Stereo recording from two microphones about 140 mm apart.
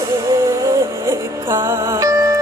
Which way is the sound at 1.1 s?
20° right (ahead or behind).